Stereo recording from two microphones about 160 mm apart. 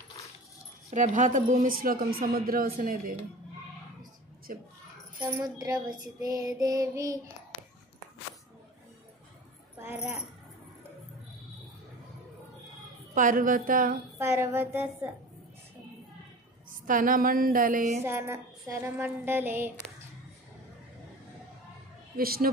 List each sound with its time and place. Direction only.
0.8 s a man's voice: 45° right (ahead or behind); by 3.2 s 60° right (ahead or behind)
4.5 s a man's voice: 60° right (ahead or behind)
5.4 s child singing: 25° right (ahead or behind)
13.1 s a man's voice: 55° right (ahead or behind)
14.1 s a sound: 15° right (ahead or behind)
16.8 s a man's voice: 60° right (ahead or behind)
18.0 s a sound: 15° right (ahead or behind)
22.1 s a woman's voice: 65° right (ahead or behind)